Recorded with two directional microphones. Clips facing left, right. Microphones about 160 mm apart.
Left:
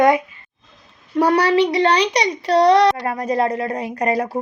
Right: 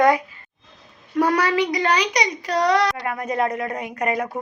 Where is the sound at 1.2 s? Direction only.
30° left (ahead or behind).